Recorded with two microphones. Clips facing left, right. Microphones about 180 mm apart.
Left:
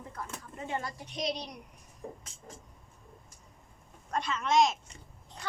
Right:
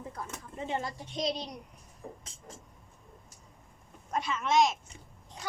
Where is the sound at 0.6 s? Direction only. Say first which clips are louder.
Right 2 dB; 25° right (ahead or behind).